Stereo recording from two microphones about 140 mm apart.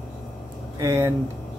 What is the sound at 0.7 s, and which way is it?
Speech, 20° right (ahead or behind).